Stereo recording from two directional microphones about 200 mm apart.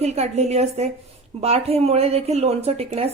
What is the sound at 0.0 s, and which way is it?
A woman's voice, 35° right (ahead or behind).